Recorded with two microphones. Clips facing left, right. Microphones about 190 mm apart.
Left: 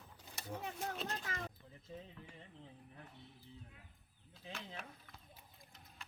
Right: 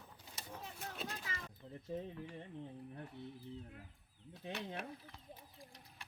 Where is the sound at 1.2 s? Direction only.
50° left (ahead or behind).